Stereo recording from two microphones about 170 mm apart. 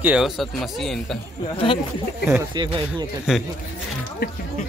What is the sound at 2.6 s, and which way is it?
Speech, 25° right (ahead or behind).